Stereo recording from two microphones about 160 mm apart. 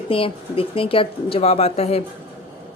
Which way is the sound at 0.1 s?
35° left (ahead or behind).